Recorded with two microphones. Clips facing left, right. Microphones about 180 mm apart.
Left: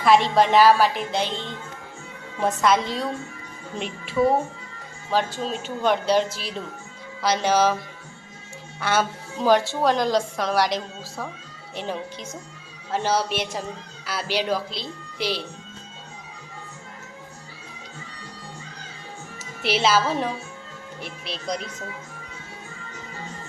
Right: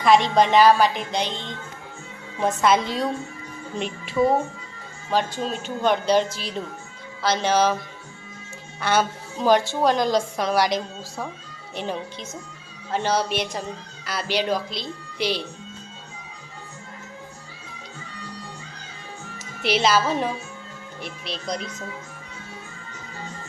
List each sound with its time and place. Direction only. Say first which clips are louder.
0.0 s a woman's voice: even; 5° left (ahead or behind)
2.4 s a woman's voice: right 1 dB; centre (ahead or behind)
8.8 s a woman's voice: right 1 dB; 5° left (ahead or behind)
11.8 s a woman's voice: right 1 dB; 5° left (ahead or behind)
19.6 s a woman's voice: right 1 dB; 5° left (ahead or behind)